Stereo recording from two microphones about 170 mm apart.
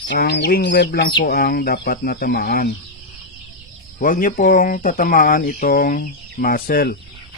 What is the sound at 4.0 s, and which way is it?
Speech, 55° left (ahead or behind).